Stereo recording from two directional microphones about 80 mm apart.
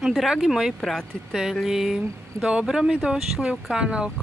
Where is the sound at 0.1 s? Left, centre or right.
Centre.